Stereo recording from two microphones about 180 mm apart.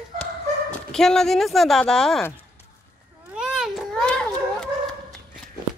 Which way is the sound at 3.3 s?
5° right (ahead or behind).